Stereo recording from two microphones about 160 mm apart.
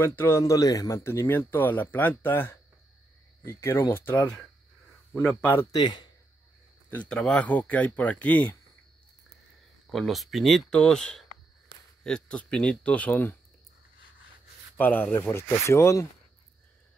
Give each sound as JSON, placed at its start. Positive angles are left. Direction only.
{"t": 0.0, "sound": "speech", "side_deg": 15}
{"t": 5.8, "sound": "speech", "side_deg": 25}
{"t": 6.9, "sound": "speech", "side_deg": 10}
{"t": 9.8, "sound": "speech", "side_deg": 0}
{"t": 14.8, "sound": "speech", "side_deg": 10}